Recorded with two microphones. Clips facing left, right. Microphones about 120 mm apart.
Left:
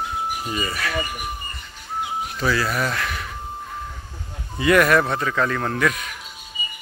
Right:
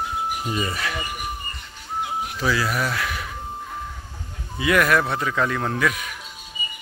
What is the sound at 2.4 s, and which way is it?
Speech, 10° right (ahead or behind).